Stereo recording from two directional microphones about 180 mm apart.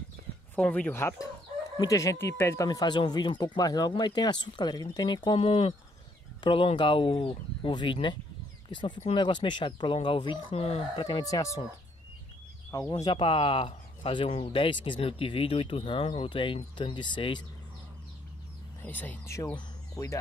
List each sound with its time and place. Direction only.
0.6 s speech: 5° left (ahead or behind); by 11.1 s 35° left (ahead or behind)
11.1 s speech: 20° left (ahead or behind)
13.0 s speech: 25° left (ahead or behind)
18.8 s speech: 10° left (ahead or behind)